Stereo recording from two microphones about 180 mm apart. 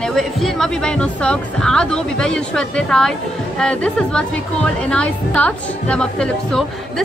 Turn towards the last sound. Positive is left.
turn(degrees=5)  # may be behind; listen again after turning